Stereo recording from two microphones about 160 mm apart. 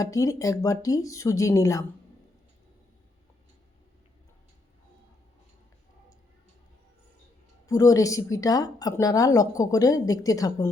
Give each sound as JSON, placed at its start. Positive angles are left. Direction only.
{"t": 0.0, "sound": "speech", "side_deg": 20}
{"t": 7.7, "sound": "speech", "side_deg": 20}